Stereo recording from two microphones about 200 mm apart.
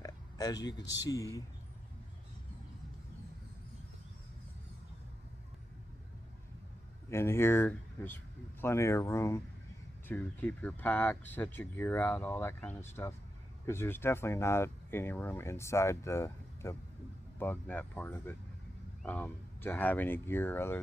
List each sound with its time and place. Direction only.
0.0 s a sound: 20° left (ahead or behind)
1.0 s speech: 15° left (ahead or behind)
7.1 s speech: 15° left (ahead or behind)